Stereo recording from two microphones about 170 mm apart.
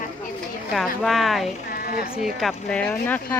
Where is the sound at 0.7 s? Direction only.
Centre (ahead or behind).